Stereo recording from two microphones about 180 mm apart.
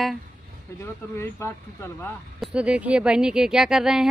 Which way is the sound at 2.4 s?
5° right (ahead or behind).